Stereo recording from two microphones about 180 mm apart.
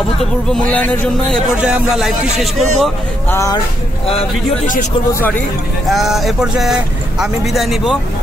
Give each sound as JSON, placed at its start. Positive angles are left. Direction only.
{"t": 0.2, "sound": "speech", "side_deg": 5}
{"t": 3.3, "sound": "speech", "side_deg": 15}
{"t": 5.9, "sound": "speech", "side_deg": 0}